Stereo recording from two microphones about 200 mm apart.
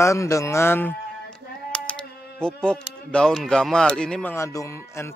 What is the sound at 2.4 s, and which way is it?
Speech, 5° left (ahead or behind).